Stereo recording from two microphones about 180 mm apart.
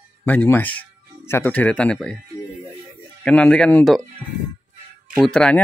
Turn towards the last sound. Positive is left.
turn(degrees=5)  # may be behind; listen again after turning